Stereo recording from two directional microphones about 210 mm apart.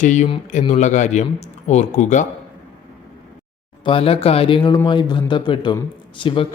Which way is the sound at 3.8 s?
25° left (ahead or behind).